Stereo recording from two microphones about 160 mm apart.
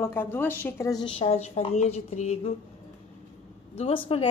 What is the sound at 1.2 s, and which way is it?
A woman's voice, 40° left (ahead or behind).